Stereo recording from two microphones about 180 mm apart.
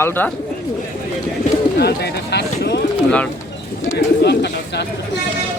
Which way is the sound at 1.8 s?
65° left (ahead or behind).